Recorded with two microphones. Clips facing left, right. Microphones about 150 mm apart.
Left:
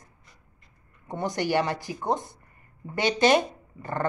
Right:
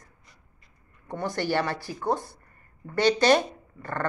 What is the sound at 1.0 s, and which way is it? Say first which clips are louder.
Speech: left 1 dB; 20° left (ahead or behind).